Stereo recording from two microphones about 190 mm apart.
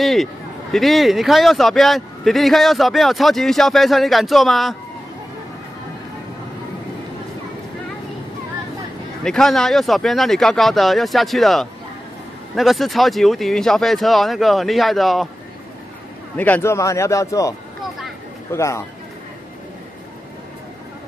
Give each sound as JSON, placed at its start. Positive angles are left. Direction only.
{"t": 0.0, "sound": "speech", "side_deg": 0}
{"t": 9.2, "sound": "speech", "side_deg": 0}
{"t": 16.3, "sound": "a man's voice", "side_deg": 10}